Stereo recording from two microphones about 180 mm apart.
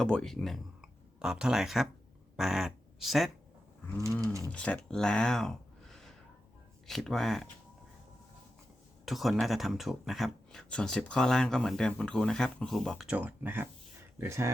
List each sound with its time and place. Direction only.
0.0 s speech: 5° left (ahead or behind)
4.5 s speech: 5° left (ahead or behind)
9.0 s speech: centre (ahead or behind); by 14.5 s 15° right (ahead or behind)